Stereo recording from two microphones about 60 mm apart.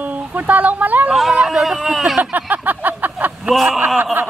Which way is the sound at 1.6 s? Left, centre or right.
Centre.